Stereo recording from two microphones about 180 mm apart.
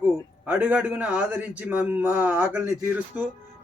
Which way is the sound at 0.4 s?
5° right (ahead or behind).